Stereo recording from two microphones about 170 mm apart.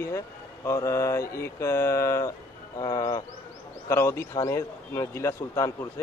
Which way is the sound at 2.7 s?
20° left (ahead or behind).